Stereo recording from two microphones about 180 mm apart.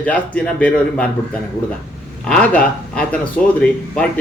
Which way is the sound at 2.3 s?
5° left (ahead or behind).